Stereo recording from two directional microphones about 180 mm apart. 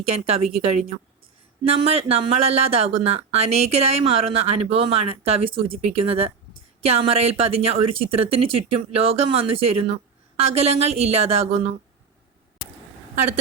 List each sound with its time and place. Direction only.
0.0 s speech: 35° right (ahead or behind)